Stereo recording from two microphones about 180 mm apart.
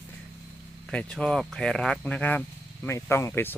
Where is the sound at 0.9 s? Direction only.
5° left (ahead or behind).